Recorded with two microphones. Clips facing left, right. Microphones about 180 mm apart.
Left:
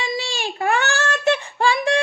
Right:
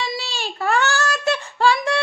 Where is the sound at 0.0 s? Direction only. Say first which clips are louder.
Left 2 dB; 15° left (ahead or behind).